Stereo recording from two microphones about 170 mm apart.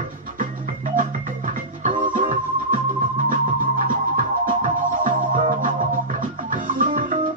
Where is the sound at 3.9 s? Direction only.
55° right (ahead or behind).